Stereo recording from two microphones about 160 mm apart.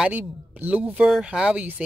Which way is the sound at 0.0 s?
10° right (ahead or behind).